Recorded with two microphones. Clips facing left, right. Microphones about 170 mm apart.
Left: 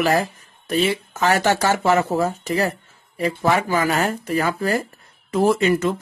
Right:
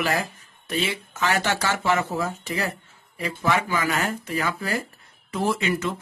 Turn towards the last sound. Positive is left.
turn(degrees=45)  # may be behind; listen again after turning